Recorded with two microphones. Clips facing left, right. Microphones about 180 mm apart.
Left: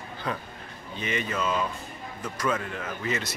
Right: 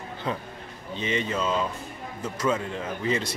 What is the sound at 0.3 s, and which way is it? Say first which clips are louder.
Speech: right 2 dB; 25° right (ahead or behind).